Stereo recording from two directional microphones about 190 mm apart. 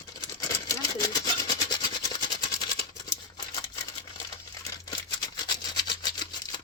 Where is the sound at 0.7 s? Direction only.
20° left (ahead or behind).